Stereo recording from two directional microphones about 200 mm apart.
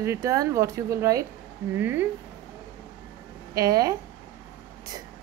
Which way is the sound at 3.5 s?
15° right (ahead or behind).